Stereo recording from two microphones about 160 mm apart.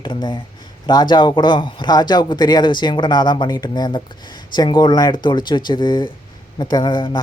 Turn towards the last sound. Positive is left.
turn(degrees=30)  # may be behind; listen again after turning